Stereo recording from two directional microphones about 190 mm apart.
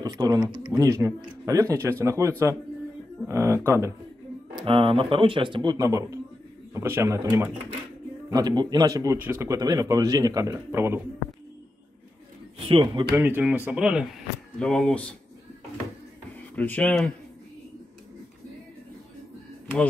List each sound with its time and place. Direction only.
0.0 s a man's voice: 20° right (ahead or behind)
4.6 s a man's voice: 30° right (ahead or behind); by 11.0 s 15° right (ahead or behind)
12.5 s speech: 30° right (ahead or behind)
13.1 s a man's voice: 10° right (ahead or behind); by 15.1 s 5° left (ahead or behind)
16.5 s speech: 10° left (ahead or behind)